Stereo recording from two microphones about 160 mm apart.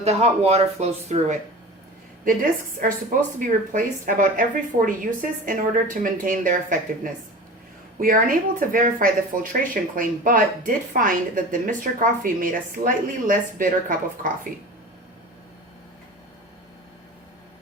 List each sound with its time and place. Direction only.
0.0 s speech: 40° right (ahead or behind)
2.2 s speech: 60° right (ahead or behind)
5.5 s speech: 60° right (ahead or behind)